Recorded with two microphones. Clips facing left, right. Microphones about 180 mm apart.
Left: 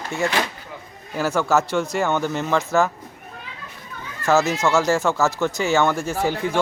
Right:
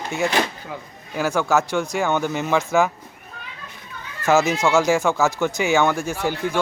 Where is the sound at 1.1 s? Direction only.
5° left (ahead or behind).